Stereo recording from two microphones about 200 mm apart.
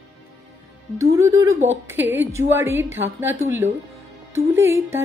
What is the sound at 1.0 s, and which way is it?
Speech, 15° right (ahead or behind).